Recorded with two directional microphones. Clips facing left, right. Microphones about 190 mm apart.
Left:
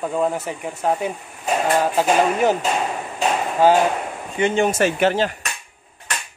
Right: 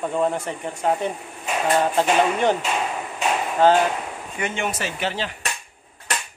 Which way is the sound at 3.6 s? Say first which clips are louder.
Left 1 dB; 10° left (ahead or behind).